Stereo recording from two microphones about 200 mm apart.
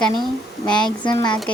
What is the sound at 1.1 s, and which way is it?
Speech, 20° left (ahead or behind).